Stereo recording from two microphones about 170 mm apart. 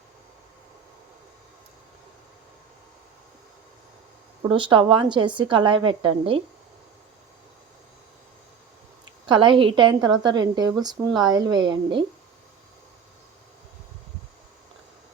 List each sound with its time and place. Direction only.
4.4 s a woman's voice: 30° right (ahead or behind)
9.2 s a woman's voice: 30° right (ahead or behind)